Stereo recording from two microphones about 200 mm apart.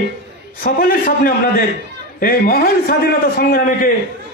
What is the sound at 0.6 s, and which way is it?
A man's voice, 45° left (ahead or behind).